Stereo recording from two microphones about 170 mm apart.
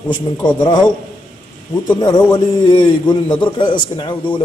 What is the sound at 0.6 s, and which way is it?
Speech, 25° left (ahead or behind).